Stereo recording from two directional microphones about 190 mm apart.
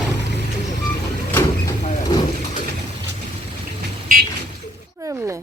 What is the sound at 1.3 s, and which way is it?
Mechanisms, 10° left (ahead or behind).